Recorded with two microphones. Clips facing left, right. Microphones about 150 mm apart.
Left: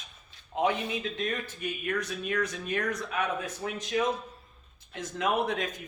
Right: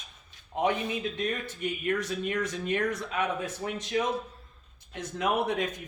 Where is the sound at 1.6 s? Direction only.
25° right (ahead or behind).